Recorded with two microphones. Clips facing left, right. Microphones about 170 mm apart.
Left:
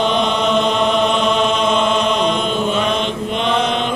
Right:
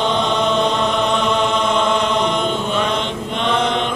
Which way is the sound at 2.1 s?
20° right (ahead or behind).